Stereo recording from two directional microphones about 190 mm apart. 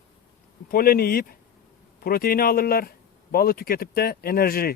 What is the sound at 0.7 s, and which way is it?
Speech, 50° left (ahead or behind).